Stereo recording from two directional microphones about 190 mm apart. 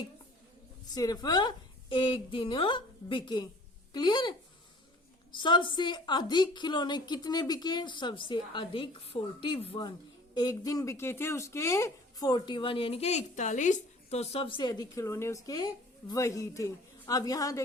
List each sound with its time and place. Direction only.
0.9 s speech: 20° left (ahead or behind)